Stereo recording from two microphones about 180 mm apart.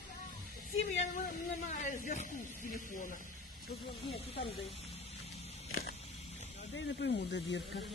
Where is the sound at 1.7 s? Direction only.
45° left (ahead or behind).